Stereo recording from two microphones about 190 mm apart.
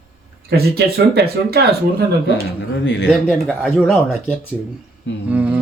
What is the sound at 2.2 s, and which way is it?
Speech, 65° left (ahead or behind).